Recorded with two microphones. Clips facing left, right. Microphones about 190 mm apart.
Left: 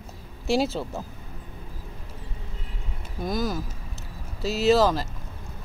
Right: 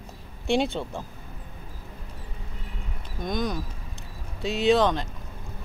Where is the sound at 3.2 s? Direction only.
5° left (ahead or behind).